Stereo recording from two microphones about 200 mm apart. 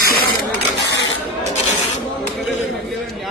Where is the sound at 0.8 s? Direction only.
65° left (ahead or behind).